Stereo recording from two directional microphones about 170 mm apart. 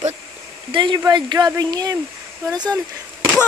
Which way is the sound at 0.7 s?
30° right (ahead or behind).